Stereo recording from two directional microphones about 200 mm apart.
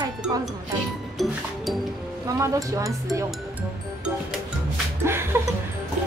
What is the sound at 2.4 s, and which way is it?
Speech, 15° right (ahead or behind).